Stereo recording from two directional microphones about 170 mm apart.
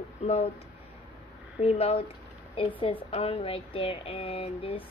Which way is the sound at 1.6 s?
35° left (ahead or behind).